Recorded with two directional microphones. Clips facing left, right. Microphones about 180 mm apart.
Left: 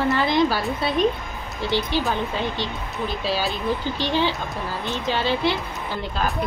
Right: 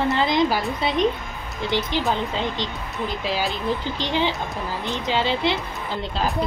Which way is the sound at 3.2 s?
15° right (ahead or behind).